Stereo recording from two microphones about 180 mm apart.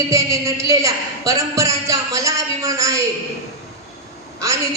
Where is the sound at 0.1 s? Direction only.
15° right (ahead or behind).